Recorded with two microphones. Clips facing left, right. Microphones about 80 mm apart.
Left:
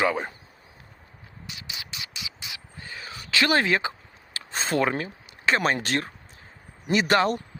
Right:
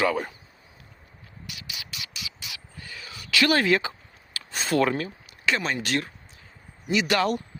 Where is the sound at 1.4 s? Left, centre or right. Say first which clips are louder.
Left 1 dB; left.